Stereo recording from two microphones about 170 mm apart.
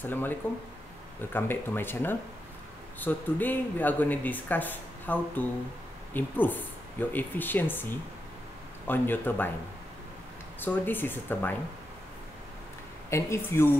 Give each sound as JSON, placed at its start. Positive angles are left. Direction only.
{"t": 0.0, "sound": "speech", "side_deg": 10}
{"t": 1.3, "sound": "speech", "side_deg": 10}
{"t": 10.6, "sound": "speech", "side_deg": 10}
{"t": 13.1, "sound": "speech", "side_deg": 15}